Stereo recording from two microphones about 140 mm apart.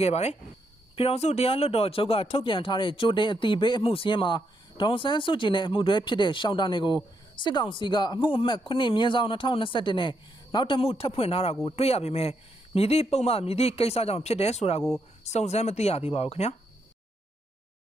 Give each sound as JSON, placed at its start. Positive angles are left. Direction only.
{"t": 0.0, "sound": "speech", "side_deg": 50}